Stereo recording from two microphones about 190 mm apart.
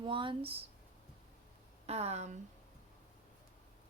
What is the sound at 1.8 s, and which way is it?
Speech, 35° right (ahead or behind).